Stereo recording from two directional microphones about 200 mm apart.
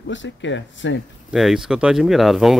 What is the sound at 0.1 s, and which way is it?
Speech, 65° left (ahead or behind).